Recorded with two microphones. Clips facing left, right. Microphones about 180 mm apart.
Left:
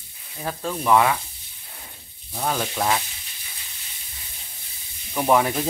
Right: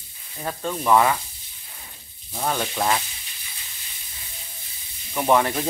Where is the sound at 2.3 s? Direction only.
Centre (ahead or behind).